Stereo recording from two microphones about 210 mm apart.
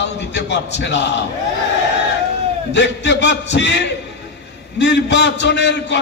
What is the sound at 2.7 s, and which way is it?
A man's voice, 55° left (ahead or behind).